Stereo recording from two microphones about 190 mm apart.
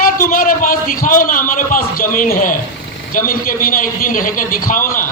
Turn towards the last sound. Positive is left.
turn(degrees=45)  # may be behind; listen again after turning